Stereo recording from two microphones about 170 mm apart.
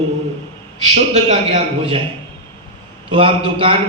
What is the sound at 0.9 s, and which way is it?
Speech, 40° right (ahead or behind).